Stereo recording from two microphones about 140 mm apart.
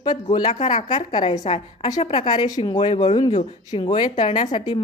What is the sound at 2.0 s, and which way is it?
Speech, 45° left (ahead or behind).